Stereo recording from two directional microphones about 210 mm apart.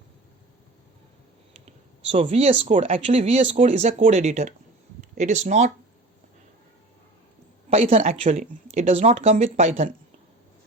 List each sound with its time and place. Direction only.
2.0 s speech: 30° right (ahead or behind)
7.7 s speech: 30° right (ahead or behind)